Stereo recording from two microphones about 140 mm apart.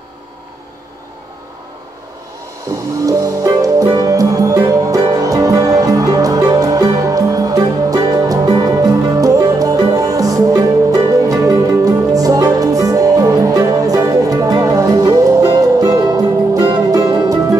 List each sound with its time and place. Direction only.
3.1 s music: 25° right (ahead or behind)